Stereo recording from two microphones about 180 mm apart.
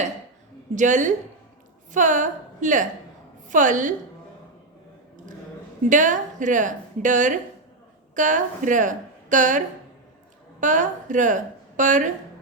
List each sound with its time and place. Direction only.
0.8 s a woman's voice: 45° right (ahead or behind)
5.9 s a woman's voice: 45° right (ahead or behind)